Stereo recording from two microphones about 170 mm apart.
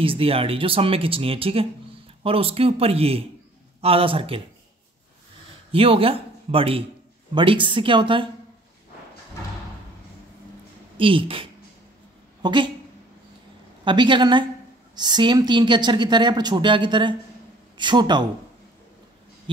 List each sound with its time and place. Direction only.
0.0 s speech: 35° right (ahead or behind)
5.7 s speech: 35° right (ahead or behind)
11.0 s a woman's voice: 30° right (ahead or behind)
13.8 s speech: 30° right (ahead or behind)